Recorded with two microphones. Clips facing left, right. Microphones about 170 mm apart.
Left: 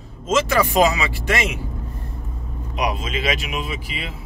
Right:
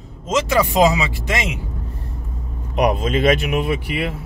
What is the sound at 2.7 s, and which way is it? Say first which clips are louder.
Speech: right 7 dB; 55° right (ahead or behind).